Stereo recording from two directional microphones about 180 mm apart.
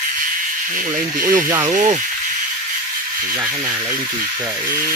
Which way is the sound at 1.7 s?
40° right (ahead or behind).